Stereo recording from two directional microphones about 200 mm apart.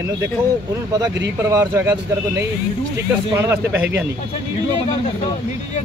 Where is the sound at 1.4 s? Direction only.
15° right (ahead or behind).